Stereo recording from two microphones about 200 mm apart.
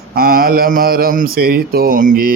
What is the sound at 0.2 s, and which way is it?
Speech, 45° right (ahead or behind).